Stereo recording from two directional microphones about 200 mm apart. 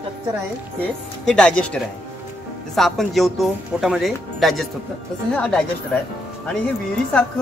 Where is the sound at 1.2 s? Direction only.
5° left (ahead or behind).